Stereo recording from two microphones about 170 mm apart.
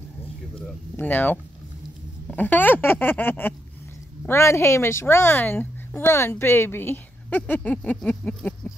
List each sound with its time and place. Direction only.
0.9 s speech: 10° left (ahead or behind)